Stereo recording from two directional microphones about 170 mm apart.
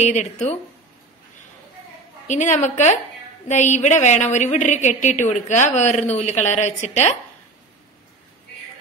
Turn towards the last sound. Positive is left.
turn(degrees=40)  # may be behind; listen again after turning